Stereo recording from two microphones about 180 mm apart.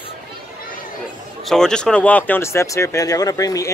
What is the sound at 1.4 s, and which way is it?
Speech, 5° left (ahead or behind).